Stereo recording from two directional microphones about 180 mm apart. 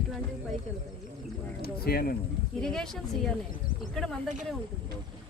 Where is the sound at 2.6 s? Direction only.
5° left (ahead or behind).